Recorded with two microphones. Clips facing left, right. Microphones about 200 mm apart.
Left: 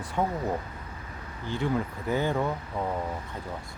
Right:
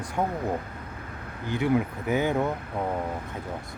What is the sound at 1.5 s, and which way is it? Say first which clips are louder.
Speech: right 4 dB; 15° right (ahead or behind).